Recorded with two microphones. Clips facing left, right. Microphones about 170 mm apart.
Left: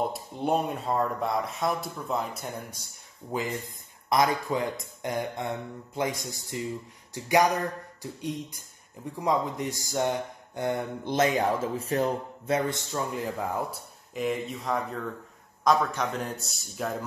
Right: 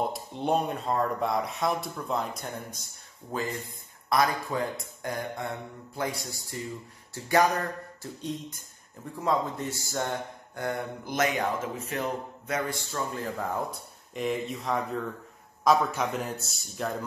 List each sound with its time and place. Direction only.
0.1 s speech: 5° left (ahead or behind)
2.7 s speech: 15° left (ahead or behind)
14.1 s speech: centre (ahead or behind)